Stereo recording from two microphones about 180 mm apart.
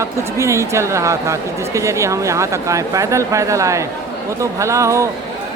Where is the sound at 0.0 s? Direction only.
15° right (ahead or behind).